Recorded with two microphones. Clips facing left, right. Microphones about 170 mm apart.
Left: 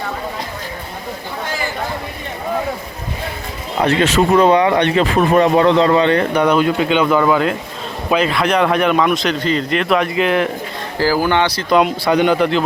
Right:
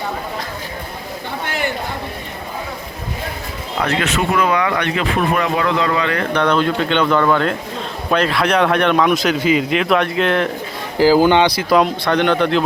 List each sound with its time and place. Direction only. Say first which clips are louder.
3.8 s speech: left 5 dB; 30° left (ahead or behind)
6.3 s speech: left 2 dB; 10° left (ahead or behind)
10.9 s speech: right 4 dB; 15° right (ahead or behind)
11.7 s speech: left 4 dB; 5° left (ahead or behind)